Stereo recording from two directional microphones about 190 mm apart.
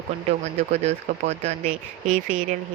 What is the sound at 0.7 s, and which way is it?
Speech, 35° right (ahead or behind).